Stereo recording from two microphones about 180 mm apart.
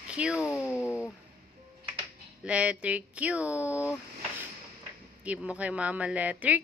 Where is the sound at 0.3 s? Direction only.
15° left (ahead or behind).